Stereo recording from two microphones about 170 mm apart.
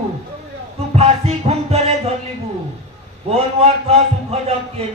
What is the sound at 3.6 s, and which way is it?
Speech, 35° right (ahead or behind).